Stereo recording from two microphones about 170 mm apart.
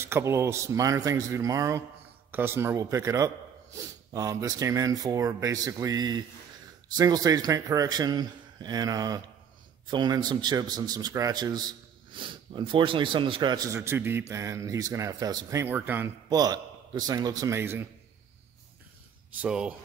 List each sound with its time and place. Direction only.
0.0 s a man's voice: 15° right (ahead or behind)
19.3 s speech: 5° right (ahead or behind)